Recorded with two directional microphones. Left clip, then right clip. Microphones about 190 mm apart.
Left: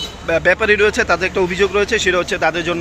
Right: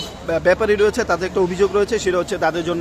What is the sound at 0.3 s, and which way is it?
A man's voice, 5° right (ahead or behind).